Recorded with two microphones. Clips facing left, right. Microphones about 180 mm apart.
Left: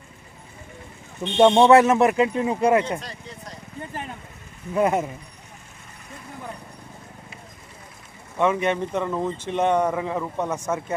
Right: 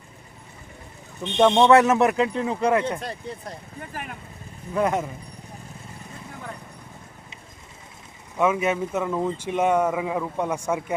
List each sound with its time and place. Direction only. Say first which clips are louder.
1.2 s speech: left 2 dB; 5° left (ahead or behind)
3.0 s speech: right 5 dB; 55° right (ahead or behind)
3.8 s speech: left 5 dB; 25° left (ahead or behind)
4.7 s speech: left 2 dB; 10° left (ahead or behind)
8.4 s speech: even; 5° right (ahead or behind)